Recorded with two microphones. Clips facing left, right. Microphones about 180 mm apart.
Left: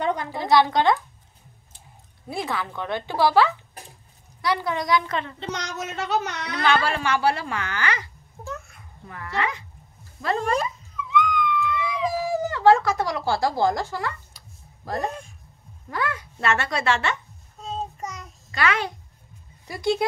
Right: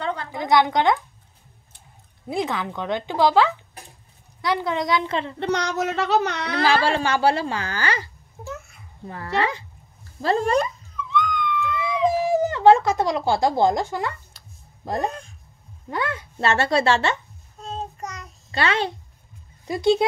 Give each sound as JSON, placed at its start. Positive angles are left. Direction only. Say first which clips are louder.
{"t": 0.0, "sound": "a sound", "louder": "left 3 dB", "side_deg": 20}
{"t": 0.3, "sound": "speech", "louder": "right 1 dB", "side_deg": -20}
{"t": 2.2, "sound": "a woman's voice", "louder": "right 3 dB", "side_deg": -20}
{"t": 5.4, "sound": "speech", "louder": "right 8 dB", "side_deg": -65}
{"t": 6.6, "sound": "speech", "louder": "right 2 dB", "side_deg": -30}
{"t": 8.5, "sound": "a sound", "louder": "even", "side_deg": -5}
{"t": 9.0, "sound": "speech", "louder": "right 4 dB", "side_deg": -30}
{"t": 11.1, "sound": "a sound", "louder": "left 1 dB", "side_deg": 5}
{"t": 11.8, "sound": "a sound", "louder": "right 4 dB", "side_deg": -25}
{"t": 15.0, "sound": "speech", "louder": "right 2 dB", "side_deg": 5}
{"t": 15.9, "sound": "speech", "louder": "right 1 dB", "side_deg": -25}
{"t": 17.6, "sound": "child singing", "louder": "even", "side_deg": 0}
{"t": 18.5, "sound": "a child's voice", "louder": "right 2 dB", "side_deg": -30}